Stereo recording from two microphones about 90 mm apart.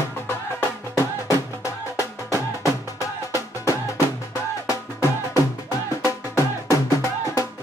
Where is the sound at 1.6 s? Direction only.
35° left (ahead or behind).